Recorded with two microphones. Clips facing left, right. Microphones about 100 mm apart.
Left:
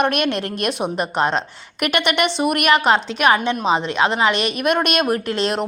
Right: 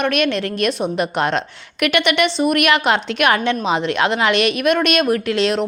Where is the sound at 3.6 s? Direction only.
35° left (ahead or behind).